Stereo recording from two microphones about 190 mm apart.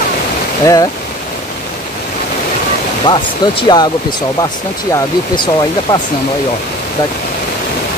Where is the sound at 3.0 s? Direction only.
25° left (ahead or behind).